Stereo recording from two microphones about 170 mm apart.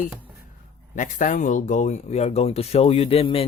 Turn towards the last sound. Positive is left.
turn(degrees=35)  # may be behind; listen again after turning